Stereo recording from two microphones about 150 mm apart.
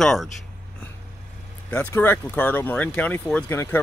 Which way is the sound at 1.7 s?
10° left (ahead or behind).